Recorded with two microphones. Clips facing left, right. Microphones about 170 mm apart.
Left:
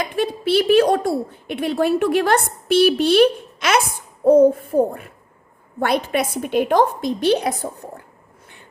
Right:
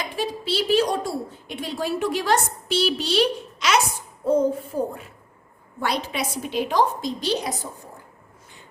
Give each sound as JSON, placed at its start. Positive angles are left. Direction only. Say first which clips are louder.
{"t": 0.0, "sound": "a woman's voice", "louder": "left 6 dB", "side_deg": 55}